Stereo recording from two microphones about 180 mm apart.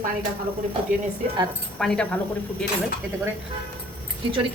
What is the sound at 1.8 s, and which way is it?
Speech, 5° left (ahead or behind).